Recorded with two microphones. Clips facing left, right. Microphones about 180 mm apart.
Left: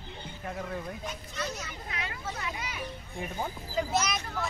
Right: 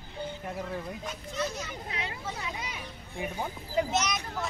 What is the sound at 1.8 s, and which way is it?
Speech, 25° right (ahead or behind).